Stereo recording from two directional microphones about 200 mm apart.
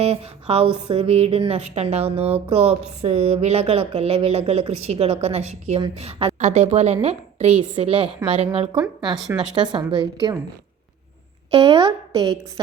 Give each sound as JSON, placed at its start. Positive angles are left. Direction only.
{"t": 0.0, "sound": "speech", "side_deg": -30}
{"t": 8.7, "sound": "speech", "side_deg": -5}
{"t": 9.6, "sound": "a woman's voice", "side_deg": -20}
{"t": 11.5, "sound": "a woman's voice", "side_deg": -25}